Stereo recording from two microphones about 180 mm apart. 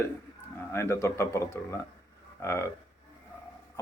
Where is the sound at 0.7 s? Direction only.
15° left (ahead or behind).